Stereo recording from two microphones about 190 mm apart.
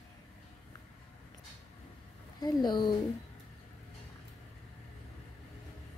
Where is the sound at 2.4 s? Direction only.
20° left (ahead or behind).